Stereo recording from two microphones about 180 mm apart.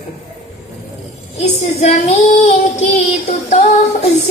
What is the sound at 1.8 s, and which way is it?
Child singing, 40° left (ahead or behind).